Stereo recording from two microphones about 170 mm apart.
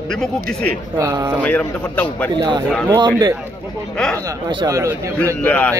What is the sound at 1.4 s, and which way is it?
Speech, 10° left (ahead or behind).